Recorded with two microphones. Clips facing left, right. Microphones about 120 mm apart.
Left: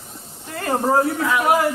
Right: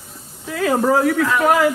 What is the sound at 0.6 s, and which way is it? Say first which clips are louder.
Speech: right 3 dB; 90° right.